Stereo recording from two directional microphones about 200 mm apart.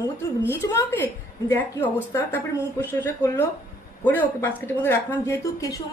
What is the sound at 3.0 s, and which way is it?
A woman's voice, 10° left (ahead or behind).